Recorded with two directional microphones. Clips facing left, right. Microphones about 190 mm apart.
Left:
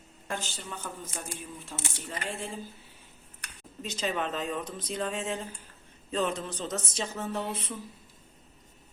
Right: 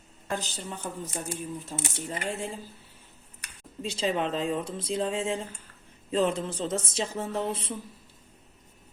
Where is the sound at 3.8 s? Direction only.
30° right (ahead or behind).